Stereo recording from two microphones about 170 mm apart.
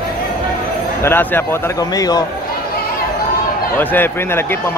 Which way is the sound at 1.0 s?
10° left (ahead or behind).